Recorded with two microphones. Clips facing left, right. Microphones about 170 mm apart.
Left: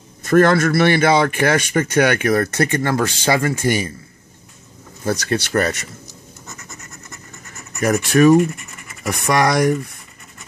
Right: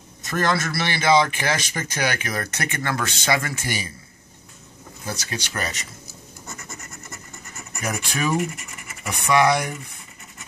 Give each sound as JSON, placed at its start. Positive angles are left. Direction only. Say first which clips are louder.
{"t": 0.2, "sound": "speech", "louder": "left 10 dB", "side_deg": 55}
{"t": 2.6, "sound": "speech", "louder": "left 9 dB", "side_deg": 35}
{"t": 3.6, "sound": "a man's voice", "louder": "left 11 dB", "side_deg": 50}
{"t": 5.0, "sound": "speech", "louder": "left 11 dB", "side_deg": 55}
{"t": 7.8, "sound": "speech", "louder": "left 13 dB", "side_deg": 65}